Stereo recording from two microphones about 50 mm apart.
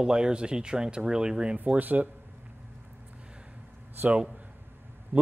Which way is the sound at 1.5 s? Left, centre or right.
Right.